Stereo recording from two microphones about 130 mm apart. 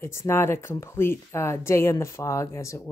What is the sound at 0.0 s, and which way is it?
A woman's voice, 20° left (ahead or behind).